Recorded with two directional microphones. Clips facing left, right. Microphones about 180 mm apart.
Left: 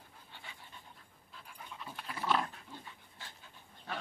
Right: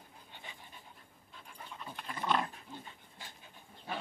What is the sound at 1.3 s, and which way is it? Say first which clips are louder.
Dog: right 1 dB; centre (ahead or behind).